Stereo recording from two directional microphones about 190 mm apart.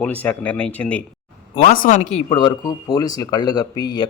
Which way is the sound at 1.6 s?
45° left (ahead or behind).